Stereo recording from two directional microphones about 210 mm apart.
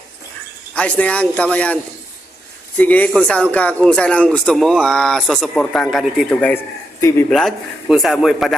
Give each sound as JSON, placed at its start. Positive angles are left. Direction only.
{"t": 0.7, "sound": "speech", "side_deg": 5}